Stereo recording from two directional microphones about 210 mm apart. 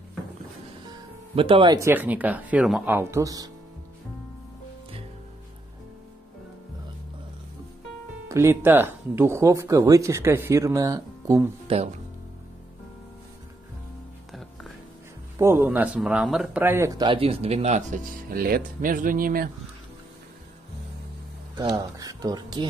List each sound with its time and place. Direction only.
0.8 s speech: 25° right (ahead or behind)
8.3 s speech: 10° right (ahead or behind)
15.3 s speech: 10° right (ahead or behind); by 19.5 s 45° right (ahead or behind)
21.5 s speech: 20° right (ahead or behind)